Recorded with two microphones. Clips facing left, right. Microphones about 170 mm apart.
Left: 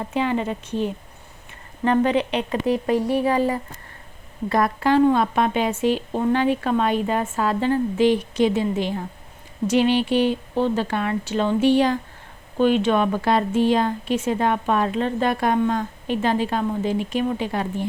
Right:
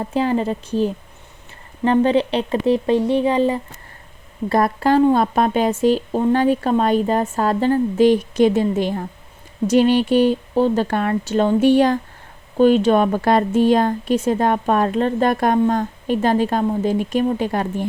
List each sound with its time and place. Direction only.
0.0 s a woman's voice: 35° right (ahead or behind)
4.4 s a woman's voice: 35° right (ahead or behind)